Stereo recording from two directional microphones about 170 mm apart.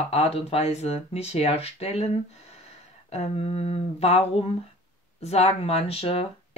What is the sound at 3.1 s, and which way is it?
Speech, 35° left (ahead or behind).